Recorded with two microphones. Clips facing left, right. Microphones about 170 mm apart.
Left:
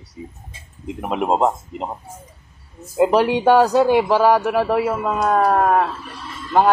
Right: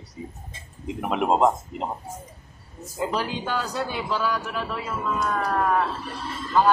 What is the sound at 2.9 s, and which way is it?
Speech, 70° left (ahead or behind).